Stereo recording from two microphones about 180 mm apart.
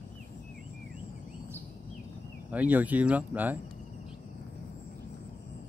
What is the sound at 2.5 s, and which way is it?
Speech, 10° right (ahead or behind).